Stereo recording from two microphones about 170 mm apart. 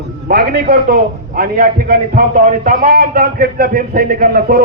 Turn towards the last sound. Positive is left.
turn(degrees=-55)  # may be behind; listen again after turning